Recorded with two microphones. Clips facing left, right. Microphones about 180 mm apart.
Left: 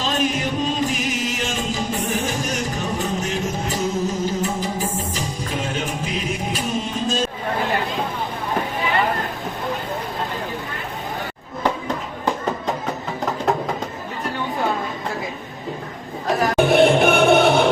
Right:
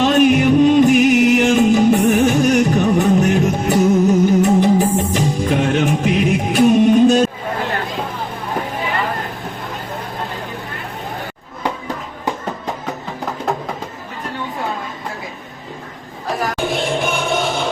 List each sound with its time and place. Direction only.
0.0 s music: 65° right (ahead or behind)
16.6 s music: 60° left (ahead or behind)